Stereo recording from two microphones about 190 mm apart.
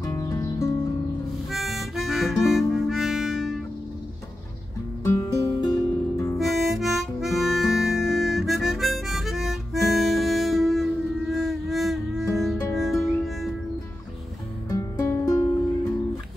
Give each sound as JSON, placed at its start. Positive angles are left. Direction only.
{"t": 0.0, "sound": "music", "side_deg": 15}
{"t": 1.5, "sound": "harmonica", "side_deg": 0}
{"t": 5.0, "sound": "music", "side_deg": 15}
{"t": 6.3, "sound": "harmonica", "side_deg": 0}
{"t": 12.7, "sound": "music", "side_deg": 0}
{"t": 14.7, "sound": "music", "side_deg": 15}